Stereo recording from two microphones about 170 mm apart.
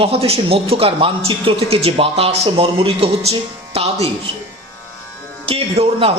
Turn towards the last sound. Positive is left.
turn(degrees=-35)  # may be behind; listen again after turning